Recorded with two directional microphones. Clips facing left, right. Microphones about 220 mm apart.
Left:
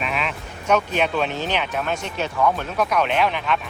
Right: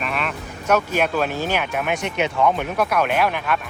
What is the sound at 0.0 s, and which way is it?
Speech, centre (ahead or behind).